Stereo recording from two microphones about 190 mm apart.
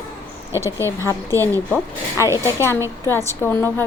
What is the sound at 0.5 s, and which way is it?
Speech, 15° right (ahead or behind).